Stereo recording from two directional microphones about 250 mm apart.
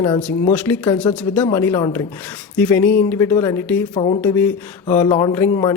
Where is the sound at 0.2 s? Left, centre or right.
Centre.